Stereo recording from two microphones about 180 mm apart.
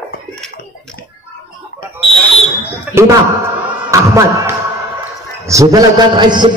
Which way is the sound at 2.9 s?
15° right (ahead or behind).